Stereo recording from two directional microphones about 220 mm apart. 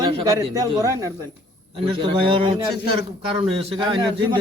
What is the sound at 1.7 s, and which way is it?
A man's voice, 25° right (ahead or behind).